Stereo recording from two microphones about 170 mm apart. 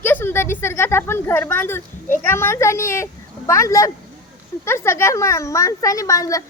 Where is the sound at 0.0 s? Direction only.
10° left (ahead or behind).